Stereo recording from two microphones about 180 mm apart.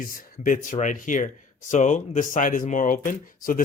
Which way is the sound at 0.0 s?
50° left (ahead or behind).